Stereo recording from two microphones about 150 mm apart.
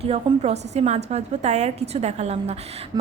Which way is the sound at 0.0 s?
40° right (ahead or behind).